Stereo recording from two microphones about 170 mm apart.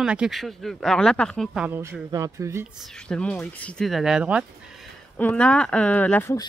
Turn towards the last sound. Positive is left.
turn(degrees=15)  # may be behind; listen again after turning